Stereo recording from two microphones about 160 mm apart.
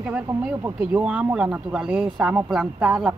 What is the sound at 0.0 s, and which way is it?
Speech, 10° right (ahead or behind).